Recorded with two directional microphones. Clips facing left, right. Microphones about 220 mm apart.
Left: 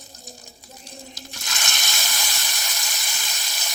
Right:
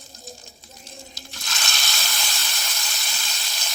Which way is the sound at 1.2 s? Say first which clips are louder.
Even; 15° left (ahead or behind).